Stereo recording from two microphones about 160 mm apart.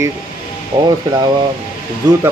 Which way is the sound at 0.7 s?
30° right (ahead or behind).